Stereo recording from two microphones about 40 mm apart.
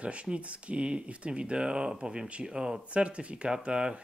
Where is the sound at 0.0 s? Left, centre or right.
Right.